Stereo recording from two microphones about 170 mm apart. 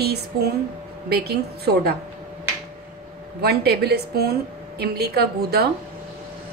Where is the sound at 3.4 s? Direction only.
70° right (ahead or behind).